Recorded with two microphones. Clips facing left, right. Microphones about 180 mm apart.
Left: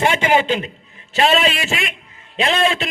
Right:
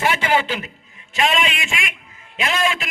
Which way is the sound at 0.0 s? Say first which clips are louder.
Left 3 dB; 25° left (ahead or behind).